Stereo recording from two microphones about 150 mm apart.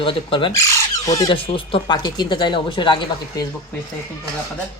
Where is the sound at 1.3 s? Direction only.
35° left (ahead or behind).